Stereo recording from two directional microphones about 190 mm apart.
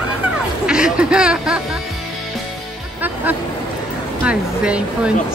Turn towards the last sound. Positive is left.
turn(degrees=-5)  # may be behind; listen again after turning